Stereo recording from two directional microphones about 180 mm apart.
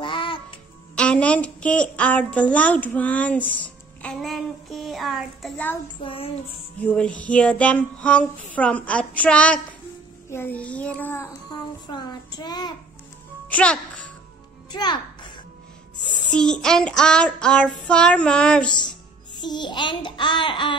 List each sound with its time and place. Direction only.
0.0 s music: 30° left (ahead or behind)
0.9 s a woman's voice: 5° left (ahead or behind)
5.9 s child singing: 30° left (ahead or behind)
6.8 s a woman's voice: 5° left (ahead or behind)
11.5 s child singing: 25° left (ahead or behind)
13.5 s a child's voice: 5° left (ahead or behind)
14.7 s music: 25° left (ahead or behind)
16.2 s child singing: 5° left (ahead or behind)
19.3 s child singing: 25° left (ahead or behind)